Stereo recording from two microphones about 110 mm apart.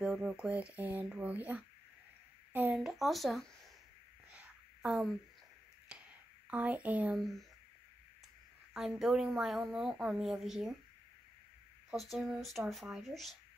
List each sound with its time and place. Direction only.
0.0 s speech: 5° right (ahead or behind)
2.5 s a sound: 15° right (ahead or behind)
2.8 s a woman's voice: centre (ahead or behind)
4.3 s a sound: 10° right (ahead or behind)
6.5 s speech: 15° right (ahead or behind)
7.2 s a woman's voice: centre (ahead or behind)
8.7 s a woman's voice: 5° right (ahead or behind)
11.9 s a woman's voice: centre (ahead or behind)